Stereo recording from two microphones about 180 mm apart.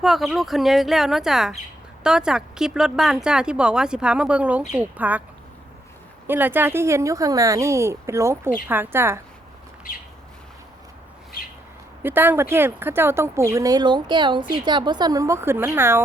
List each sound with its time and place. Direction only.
0.0 s speech: centre (ahead or behind)
6.2 s speech: 10° right (ahead or behind)
12.0 s speech: 10° right (ahead or behind)